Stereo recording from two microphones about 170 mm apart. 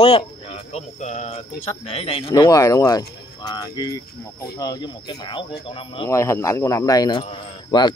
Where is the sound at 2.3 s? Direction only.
20° left (ahead or behind).